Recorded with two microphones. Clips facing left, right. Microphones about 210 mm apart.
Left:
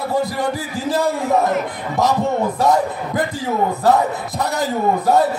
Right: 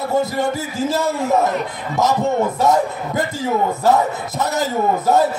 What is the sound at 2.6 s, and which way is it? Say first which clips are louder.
A man's voice: left 2 dB; 25° right (ahead or behind).